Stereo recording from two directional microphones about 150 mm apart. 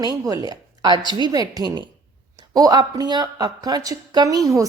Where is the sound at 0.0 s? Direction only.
25° right (ahead or behind).